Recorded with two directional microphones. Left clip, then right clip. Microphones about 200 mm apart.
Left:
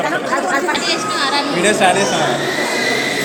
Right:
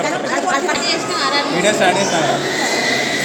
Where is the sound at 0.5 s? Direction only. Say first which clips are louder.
Left 1 dB; 5° right (ahead or behind).